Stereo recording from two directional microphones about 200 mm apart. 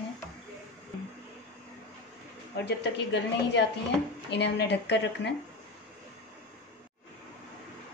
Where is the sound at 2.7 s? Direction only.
60° left (ahead or behind).